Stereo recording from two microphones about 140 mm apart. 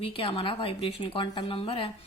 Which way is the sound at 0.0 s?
40° left (ahead or behind).